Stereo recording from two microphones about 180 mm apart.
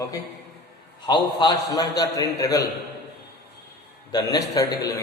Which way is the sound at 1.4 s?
20° left (ahead or behind).